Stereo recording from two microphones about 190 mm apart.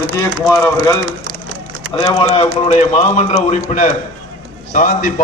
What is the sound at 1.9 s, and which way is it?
A man's voice, 25° left (ahead or behind).